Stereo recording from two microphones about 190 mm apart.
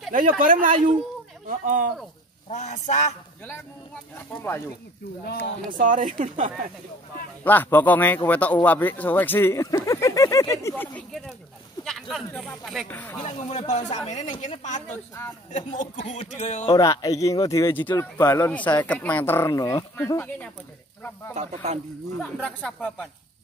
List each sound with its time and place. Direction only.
0.4 s speech: 45° right (ahead or behind)
2.5 s speech: 40° left (ahead or behind)
5.7 s speech: 45° right (ahead or behind)
7.4 s speech: 10° left (ahead or behind)
11.8 s a sound: centre (ahead or behind)
12.3 s speech: 5° left (ahead or behind)
13.2 s speech: 35° left (ahead or behind)
16.7 s speech: 20° left (ahead or behind)
22.2 s speech: 5° left (ahead or behind)